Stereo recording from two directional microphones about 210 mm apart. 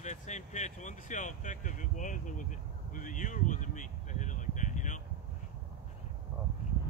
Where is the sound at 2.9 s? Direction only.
40° left (ahead or behind).